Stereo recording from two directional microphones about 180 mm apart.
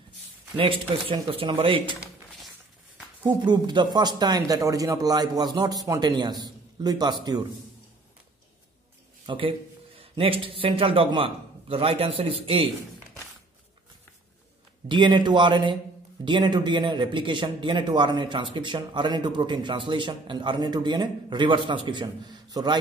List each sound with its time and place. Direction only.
0.6 s a man's voice: 30° right (ahead or behind)
3.3 s a man's voice: 25° right (ahead or behind)
9.2 s a man's voice: 30° right (ahead or behind)
14.9 s a man's voice: 25° right (ahead or behind)